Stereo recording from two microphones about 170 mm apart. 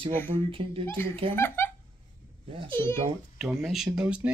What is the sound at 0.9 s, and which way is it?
Speech, 15° left (ahead or behind).